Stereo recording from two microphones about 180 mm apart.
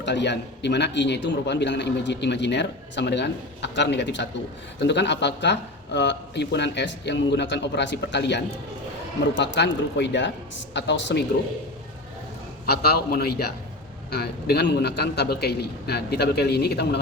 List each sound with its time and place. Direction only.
0.0 s a man's voice: 75° left (ahead or behind)
12.6 s a man's voice: 60° left (ahead or behind)